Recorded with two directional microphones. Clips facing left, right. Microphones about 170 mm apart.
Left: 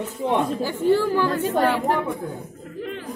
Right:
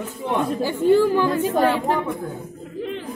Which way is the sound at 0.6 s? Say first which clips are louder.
Right 6 dB; 15° right (ahead or behind).